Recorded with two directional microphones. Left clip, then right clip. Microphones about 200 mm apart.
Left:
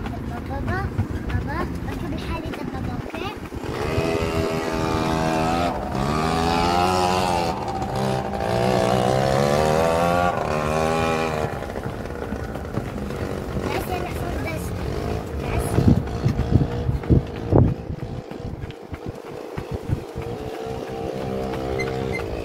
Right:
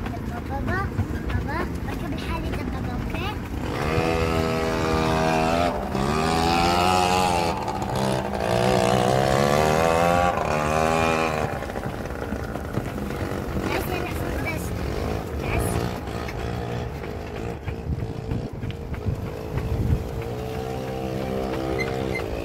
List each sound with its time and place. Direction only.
3.9 s music: 25° right (ahead or behind); by 11.5 s 5° left (ahead or behind)